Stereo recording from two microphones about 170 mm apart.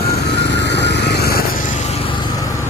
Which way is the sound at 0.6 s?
90° left.